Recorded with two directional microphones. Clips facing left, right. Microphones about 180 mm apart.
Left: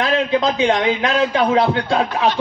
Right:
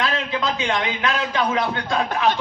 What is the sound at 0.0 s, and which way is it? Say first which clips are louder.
A man's voice: left 7 dB; 35° left (ahead or behind).